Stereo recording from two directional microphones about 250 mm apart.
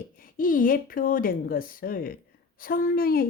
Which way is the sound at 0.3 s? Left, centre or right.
Left.